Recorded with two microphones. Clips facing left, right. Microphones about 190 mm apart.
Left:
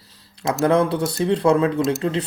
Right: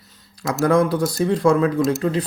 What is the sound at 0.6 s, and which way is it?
Speech, 30° left (ahead or behind).